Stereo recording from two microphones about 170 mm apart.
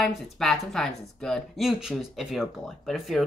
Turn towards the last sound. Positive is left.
turn(degrees=0)  # may be behind; listen again after turning